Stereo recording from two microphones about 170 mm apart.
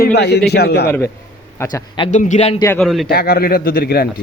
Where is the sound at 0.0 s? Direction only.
75° left (ahead or behind).